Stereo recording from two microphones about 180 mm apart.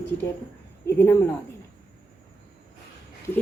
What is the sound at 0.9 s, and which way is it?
Speech, 10° left (ahead or behind).